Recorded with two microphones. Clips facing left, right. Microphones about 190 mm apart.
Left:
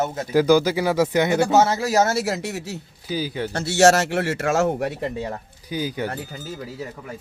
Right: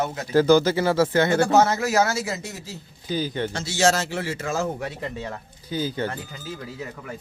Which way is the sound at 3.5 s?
65° left (ahead or behind).